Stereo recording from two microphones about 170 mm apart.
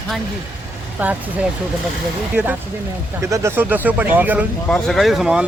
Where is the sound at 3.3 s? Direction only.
15° right (ahead or behind).